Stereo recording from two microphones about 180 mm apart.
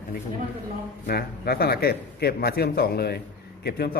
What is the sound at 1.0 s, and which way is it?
A man's voice, 60° left (ahead or behind).